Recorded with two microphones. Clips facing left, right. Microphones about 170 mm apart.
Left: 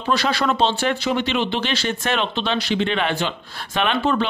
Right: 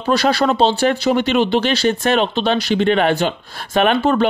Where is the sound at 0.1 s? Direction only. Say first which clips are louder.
Right 5 dB; 40° right (ahead or behind).